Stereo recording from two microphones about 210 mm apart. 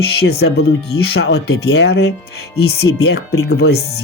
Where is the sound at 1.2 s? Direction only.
85° left.